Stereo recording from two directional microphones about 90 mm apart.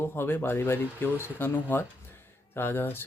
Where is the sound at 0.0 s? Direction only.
25° left (ahead or behind).